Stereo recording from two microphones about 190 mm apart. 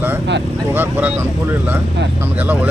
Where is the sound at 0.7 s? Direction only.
10° right (ahead or behind).